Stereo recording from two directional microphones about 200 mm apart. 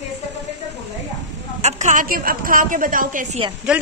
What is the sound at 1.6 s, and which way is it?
A woman's voice, 35° right (ahead or behind).